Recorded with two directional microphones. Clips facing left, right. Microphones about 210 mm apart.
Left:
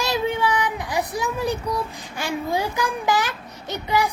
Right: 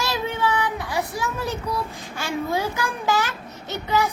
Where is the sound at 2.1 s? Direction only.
15° left (ahead or behind).